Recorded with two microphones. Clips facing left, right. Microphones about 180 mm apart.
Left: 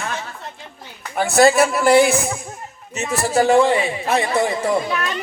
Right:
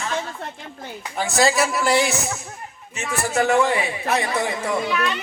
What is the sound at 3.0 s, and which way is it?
A child's voice, 40° left (ahead or behind).